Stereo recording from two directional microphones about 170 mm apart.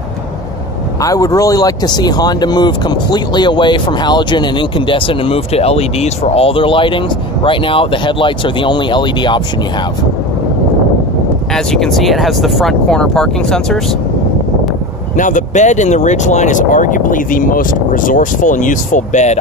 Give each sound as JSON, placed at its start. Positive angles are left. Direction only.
{"t": 1.0, "sound": "speech", "side_deg": 20}
{"t": 11.5, "sound": "speech", "side_deg": 0}
{"t": 15.1, "sound": "speech", "side_deg": 50}